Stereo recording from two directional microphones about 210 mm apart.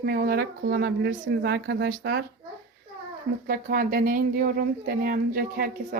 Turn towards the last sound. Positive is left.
turn(degrees=-45)  # may be behind; listen again after turning